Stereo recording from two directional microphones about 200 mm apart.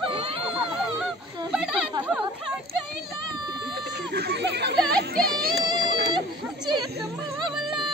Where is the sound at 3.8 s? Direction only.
55° right (ahead or behind).